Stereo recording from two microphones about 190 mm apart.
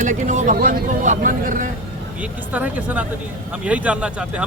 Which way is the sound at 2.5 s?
10° right (ahead or behind).